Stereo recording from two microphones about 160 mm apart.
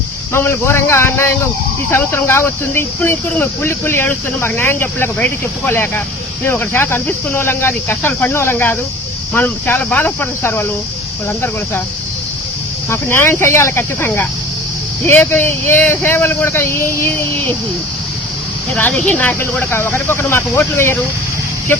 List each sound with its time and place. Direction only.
0.3 s speech: 15° left (ahead or behind)
12.9 s speech: 15° left (ahead or behind)
18.7 s speech: 10° left (ahead or behind)